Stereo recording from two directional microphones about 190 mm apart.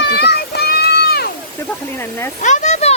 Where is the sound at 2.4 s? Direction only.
40° left (ahead or behind).